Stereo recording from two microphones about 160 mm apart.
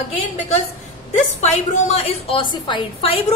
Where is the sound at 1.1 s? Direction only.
45° left (ahead or behind).